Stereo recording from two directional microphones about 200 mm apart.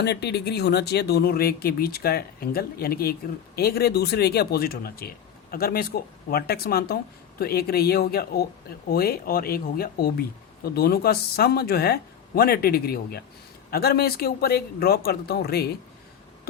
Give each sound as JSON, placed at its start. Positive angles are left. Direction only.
{"t": 0.0, "sound": "speech", "side_deg": 55}